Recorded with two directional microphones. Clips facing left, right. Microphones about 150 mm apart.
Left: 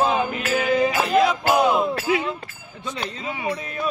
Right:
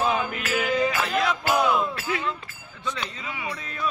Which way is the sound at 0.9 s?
40° left (ahead or behind).